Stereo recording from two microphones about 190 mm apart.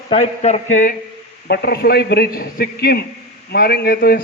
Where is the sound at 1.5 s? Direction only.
55° left (ahead or behind).